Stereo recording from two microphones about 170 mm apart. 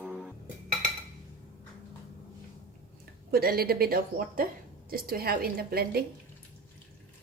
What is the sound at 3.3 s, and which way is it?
A woman's voice, 65° right (ahead or behind).